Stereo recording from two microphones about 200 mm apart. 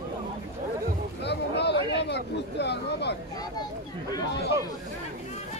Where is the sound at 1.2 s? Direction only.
60° left (ahead or behind).